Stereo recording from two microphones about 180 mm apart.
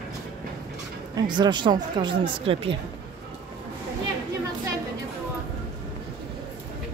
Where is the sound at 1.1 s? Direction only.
25° right (ahead or behind).